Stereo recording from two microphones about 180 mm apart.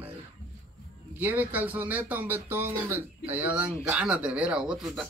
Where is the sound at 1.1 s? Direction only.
10° right (ahead or behind).